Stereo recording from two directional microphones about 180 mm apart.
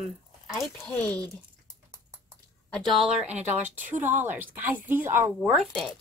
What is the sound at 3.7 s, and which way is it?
Speech, 45° right (ahead or behind).